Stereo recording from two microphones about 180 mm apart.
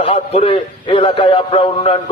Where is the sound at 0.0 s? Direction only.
30° left (ahead or behind).